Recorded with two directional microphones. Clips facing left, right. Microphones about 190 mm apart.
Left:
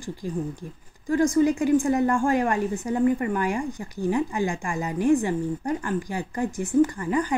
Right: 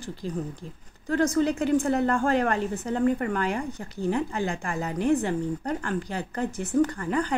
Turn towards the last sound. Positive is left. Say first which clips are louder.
# left 2 dB
turn(degrees=10)  # may be behind; listen again after turning